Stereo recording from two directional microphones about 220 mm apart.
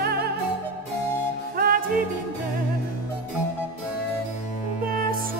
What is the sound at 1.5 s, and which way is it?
Music, 45° right (ahead or behind).